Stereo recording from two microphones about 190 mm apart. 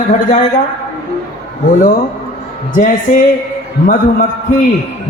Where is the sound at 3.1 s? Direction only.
45° left (ahead or behind).